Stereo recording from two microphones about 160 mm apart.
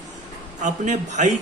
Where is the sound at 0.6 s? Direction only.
50° right (ahead or behind).